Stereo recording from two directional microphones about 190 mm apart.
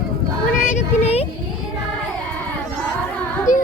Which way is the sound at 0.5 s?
40° left (ahead or behind).